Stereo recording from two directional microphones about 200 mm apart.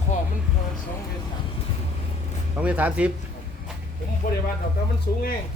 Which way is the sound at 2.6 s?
5° right (ahead or behind).